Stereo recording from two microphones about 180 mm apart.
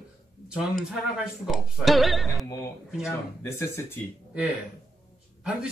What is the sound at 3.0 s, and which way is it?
Speech, 15° left (ahead or behind).